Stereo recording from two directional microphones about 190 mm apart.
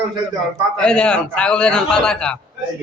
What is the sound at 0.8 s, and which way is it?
A man's voice, 5° left (ahead or behind).